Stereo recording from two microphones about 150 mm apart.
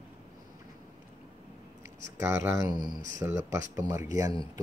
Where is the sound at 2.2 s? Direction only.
20° right (ahead or behind).